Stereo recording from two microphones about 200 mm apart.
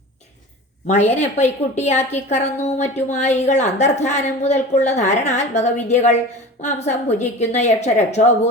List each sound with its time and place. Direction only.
0.9 s a woman's voice: 35° left (ahead or behind)